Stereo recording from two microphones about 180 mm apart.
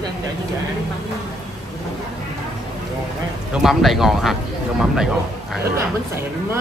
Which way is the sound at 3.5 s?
Centre (ahead or behind).